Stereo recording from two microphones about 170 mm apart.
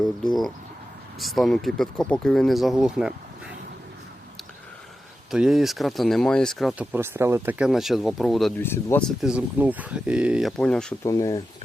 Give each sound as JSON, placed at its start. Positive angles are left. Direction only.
{"t": 1.2, "sound": "speech", "side_deg": 0}
{"t": 5.3, "sound": "speech", "side_deg": -5}
{"t": 6.9, "sound": "speech", "side_deg": -15}
{"t": 8.5, "sound": "speech", "side_deg": 15}
{"t": 11.0, "sound": "speech", "side_deg": 20}